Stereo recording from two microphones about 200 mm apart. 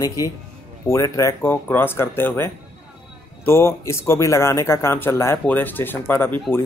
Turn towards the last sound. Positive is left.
turn(degrees=10)  # may be behind; listen again after turning